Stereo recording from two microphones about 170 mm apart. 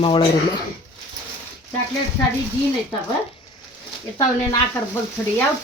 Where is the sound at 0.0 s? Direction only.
25° left (ahead or behind).